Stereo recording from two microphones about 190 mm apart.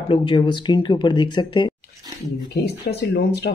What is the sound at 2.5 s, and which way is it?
Speech, 65° left (ahead or behind).